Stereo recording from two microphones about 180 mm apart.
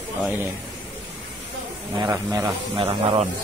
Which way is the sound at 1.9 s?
15° right (ahead or behind).